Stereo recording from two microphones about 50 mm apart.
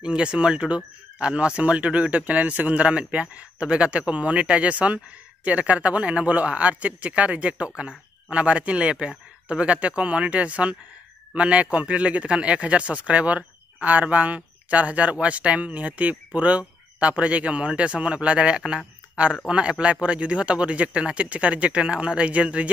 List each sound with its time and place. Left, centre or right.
0.0 s speech: centre